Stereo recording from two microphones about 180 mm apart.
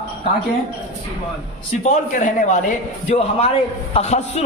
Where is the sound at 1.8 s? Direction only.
45° left (ahead or behind).